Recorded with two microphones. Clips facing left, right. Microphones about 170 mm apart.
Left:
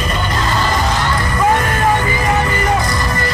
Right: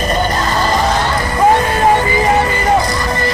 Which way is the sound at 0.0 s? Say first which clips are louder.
Right 5 dB; 40° right (ahead or behind).